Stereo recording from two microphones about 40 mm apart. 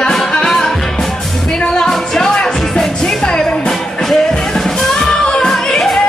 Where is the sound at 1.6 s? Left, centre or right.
Left.